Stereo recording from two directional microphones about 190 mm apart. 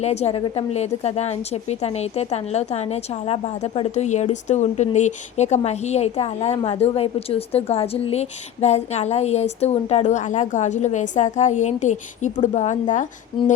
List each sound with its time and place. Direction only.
0.0 s a woman's voice: 35° left (ahead or behind)